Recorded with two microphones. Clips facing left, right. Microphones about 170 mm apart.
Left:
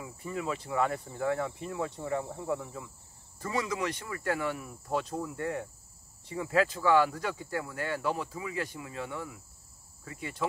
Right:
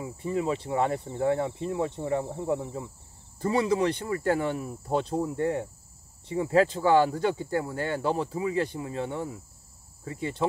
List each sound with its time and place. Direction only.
0.0 s speech: 30° right (ahead or behind)